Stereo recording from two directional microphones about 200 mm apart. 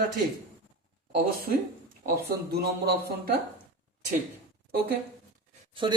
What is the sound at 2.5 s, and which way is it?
Speech, 50° right (ahead or behind).